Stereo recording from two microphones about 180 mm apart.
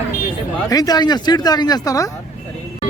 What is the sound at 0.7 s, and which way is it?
Speech, 20° left (ahead or behind).